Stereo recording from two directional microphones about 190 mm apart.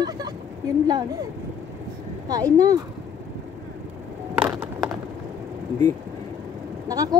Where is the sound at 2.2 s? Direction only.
20° right (ahead or behind).